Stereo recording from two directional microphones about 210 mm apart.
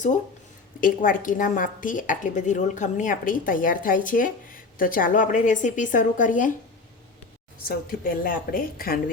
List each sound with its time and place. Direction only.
0.8 s a woman's voice: 40° left (ahead or behind)
7.9 s speech: 40° left (ahead or behind)